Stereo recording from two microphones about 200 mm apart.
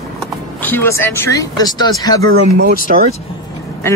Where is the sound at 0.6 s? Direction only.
10° left (ahead or behind).